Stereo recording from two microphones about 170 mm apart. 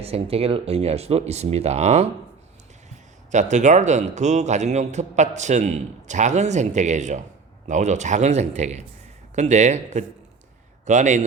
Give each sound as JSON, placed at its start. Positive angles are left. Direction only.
{"t": 0.0, "sound": "speech", "side_deg": -35}
{"t": 3.3, "sound": "a man's voice", "side_deg": -45}